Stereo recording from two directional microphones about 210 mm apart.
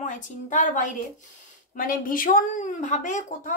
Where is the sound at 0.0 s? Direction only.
35° left (ahead or behind).